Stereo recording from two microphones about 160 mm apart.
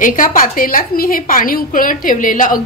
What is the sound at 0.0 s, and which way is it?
A woman's voice, 55° left (ahead or behind).